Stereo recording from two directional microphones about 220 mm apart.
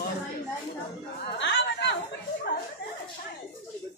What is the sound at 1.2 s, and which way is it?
Chatter, 50° left (ahead or behind).